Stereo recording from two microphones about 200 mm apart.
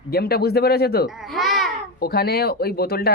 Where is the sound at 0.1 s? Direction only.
50° left (ahead or behind).